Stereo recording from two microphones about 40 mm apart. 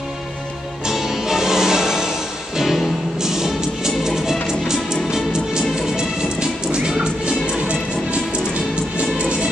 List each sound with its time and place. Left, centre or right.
0.8 s music: centre; by 9.5 s right